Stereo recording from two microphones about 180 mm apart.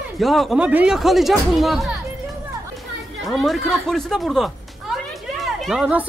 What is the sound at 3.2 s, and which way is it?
Speech, centre (ahead or behind).